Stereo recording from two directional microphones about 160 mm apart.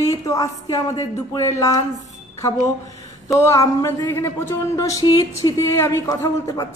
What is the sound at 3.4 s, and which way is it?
A woman's voice, 15° left (ahead or behind).